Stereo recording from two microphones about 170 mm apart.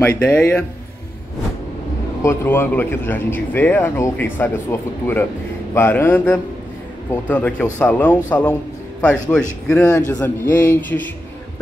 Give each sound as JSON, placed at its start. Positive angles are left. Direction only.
{"t": 0.0, "sound": "speech", "side_deg": 15}
{"t": 2.2, "sound": "speech", "side_deg": 15}
{"t": 9.7, "sound": "speech", "side_deg": 10}